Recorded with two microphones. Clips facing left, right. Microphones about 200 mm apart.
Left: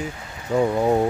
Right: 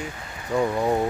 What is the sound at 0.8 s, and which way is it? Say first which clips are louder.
Speech: left 3 dB; 20° left (ahead or behind).